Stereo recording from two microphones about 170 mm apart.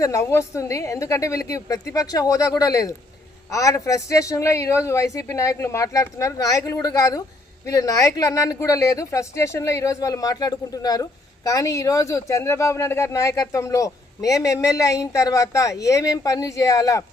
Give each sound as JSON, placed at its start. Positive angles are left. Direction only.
{"t": 0.0, "sound": "a woman's voice", "side_deg": 20}